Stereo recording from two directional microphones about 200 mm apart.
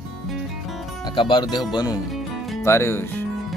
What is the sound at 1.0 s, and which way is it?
Speech, 25° left (ahead or behind).